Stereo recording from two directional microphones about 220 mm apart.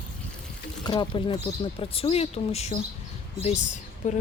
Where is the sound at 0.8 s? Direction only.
20° left (ahead or behind).